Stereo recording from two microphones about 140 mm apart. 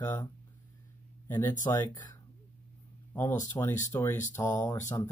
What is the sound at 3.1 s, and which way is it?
Speech, 15° left (ahead or behind).